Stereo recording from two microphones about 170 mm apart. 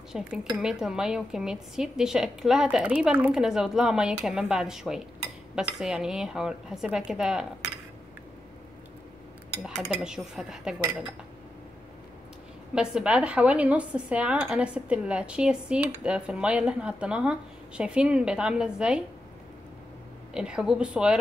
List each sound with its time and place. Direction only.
0.1 s speech: 5° right (ahead or behind)
9.6 s speech: centre (ahead or behind)
12.7 s speech: 5° right (ahead or behind)
20.3 s speech: 5° right (ahead or behind)